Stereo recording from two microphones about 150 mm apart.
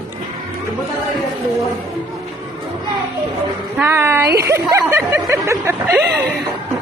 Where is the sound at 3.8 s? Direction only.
15° right (ahead or behind).